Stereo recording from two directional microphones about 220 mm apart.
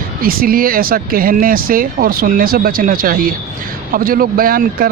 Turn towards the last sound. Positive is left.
turn(degrees=-40)  # may be behind; listen again after turning